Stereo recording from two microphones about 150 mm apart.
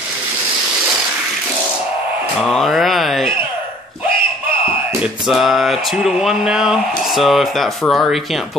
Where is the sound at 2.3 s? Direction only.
Centre (ahead or behind).